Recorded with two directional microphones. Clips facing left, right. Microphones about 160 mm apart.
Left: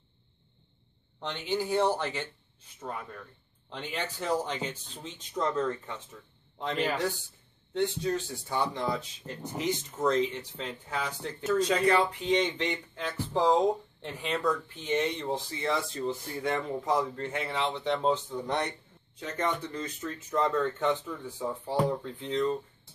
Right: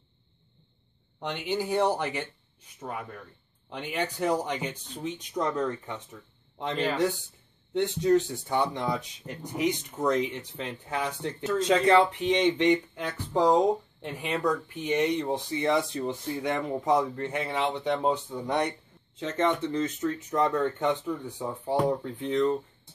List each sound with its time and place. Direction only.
1.2 s speech: 15° right (ahead or behind)
7.7 s speech: 20° right (ahead or behind)
19.1 s speech: 25° right (ahead or behind)